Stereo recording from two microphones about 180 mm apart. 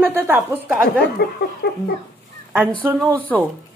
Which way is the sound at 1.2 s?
60° left (ahead or behind).